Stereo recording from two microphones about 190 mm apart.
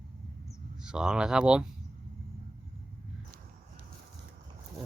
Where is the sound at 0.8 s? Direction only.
5° right (ahead or behind).